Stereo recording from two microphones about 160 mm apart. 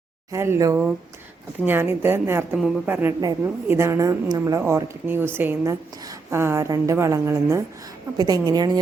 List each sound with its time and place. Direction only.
0.3 s a woman's voice: 15° right (ahead or behind)
2.6 s speech: centre (ahead or behind)
2.9 s a woman's voice: 10° right (ahead or behind)